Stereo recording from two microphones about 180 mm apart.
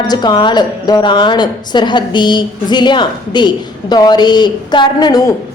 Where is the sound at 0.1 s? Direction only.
25° left (ahead or behind).